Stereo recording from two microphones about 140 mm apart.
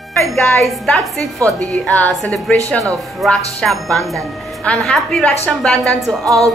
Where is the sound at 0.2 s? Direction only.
5° left (ahead or behind).